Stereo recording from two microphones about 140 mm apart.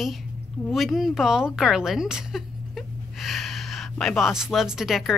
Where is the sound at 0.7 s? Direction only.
Centre (ahead or behind).